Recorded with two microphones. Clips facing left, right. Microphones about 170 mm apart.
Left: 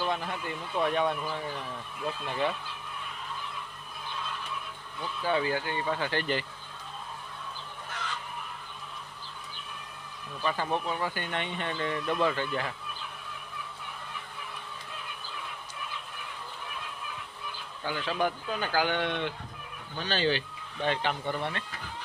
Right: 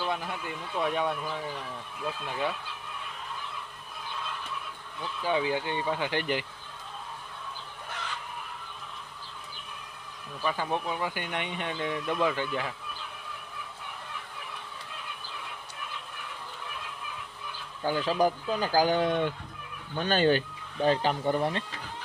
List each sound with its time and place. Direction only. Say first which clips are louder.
0.0 s speech: left 1 dB; 10° right (ahead or behind)
5.2 s speech: right 1 dB; 15° right (ahead or behind)
10.4 s speech: even; 10° right (ahead or behind)
17.8 s speech: right 4 dB; 40° right (ahead or behind)
20.8 s speech: right 5 dB; 35° right (ahead or behind)